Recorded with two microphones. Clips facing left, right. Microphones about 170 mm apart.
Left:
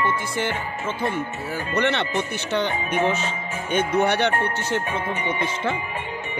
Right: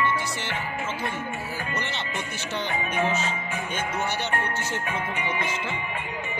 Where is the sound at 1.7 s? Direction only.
65° left (ahead or behind).